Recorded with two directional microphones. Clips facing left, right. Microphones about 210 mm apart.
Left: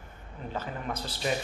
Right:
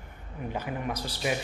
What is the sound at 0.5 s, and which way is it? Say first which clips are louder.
Speech: right 2 dB; 10° right (ahead or behind).